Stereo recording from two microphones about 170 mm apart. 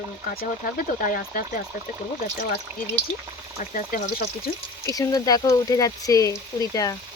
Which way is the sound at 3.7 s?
60° left (ahead or behind).